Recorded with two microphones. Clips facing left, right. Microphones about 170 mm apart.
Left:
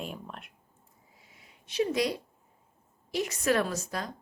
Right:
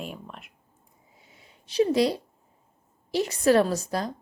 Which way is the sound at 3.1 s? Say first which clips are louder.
Right 7 dB; 30° right (ahead or behind).